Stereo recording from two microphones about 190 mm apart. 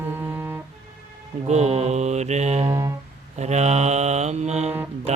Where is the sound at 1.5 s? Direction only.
35° right (ahead or behind).